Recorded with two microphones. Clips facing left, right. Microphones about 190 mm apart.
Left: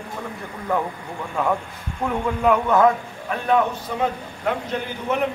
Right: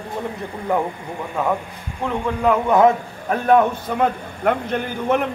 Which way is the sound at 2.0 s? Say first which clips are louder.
Right 1 dB; centre (ahead or behind).